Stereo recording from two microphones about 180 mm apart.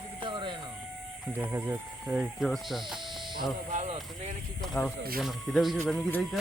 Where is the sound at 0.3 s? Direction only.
25° right (ahead or behind).